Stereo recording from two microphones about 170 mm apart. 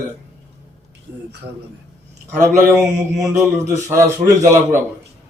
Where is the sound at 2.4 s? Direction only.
15° right (ahead or behind).